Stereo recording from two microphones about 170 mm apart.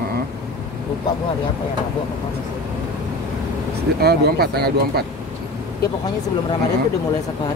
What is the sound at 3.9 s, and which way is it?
Speech, 70° right (ahead or behind).